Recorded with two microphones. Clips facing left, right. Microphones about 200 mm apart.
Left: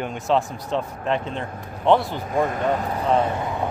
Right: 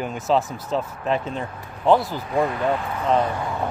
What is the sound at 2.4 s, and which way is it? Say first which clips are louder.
Speech: even; 45° left (ahead or behind).